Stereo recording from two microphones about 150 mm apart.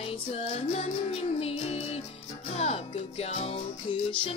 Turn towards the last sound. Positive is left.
turn(degrees=40)  # may be behind; listen again after turning